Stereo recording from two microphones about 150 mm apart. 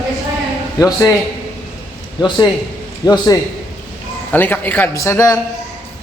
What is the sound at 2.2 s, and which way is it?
A man's voice, 30° left (ahead or behind).